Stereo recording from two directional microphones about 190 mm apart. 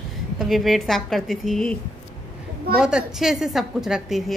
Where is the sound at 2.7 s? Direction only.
5° right (ahead or behind).